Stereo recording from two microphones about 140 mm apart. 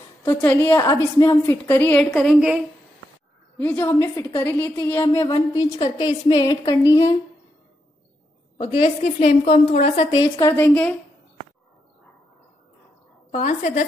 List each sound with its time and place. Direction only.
0.2 s a woman's voice: 20° left (ahead or behind)
0.7 s a woman's voice: 25° left (ahead or behind)
2.0 s a woman's voice: centre (ahead or behind)
3.5 s a woman's voice: 15° left (ahead or behind)
5.5 s a woman's voice: 35° left (ahead or behind)
8.5 s a woman's voice: 45° left (ahead or behind)
10.1 s a woman's voice: 30° left (ahead or behind)
10.5 s a woman's voice: 15° left (ahead or behind)
13.3 s a woman's voice: 55° left (ahead or behind)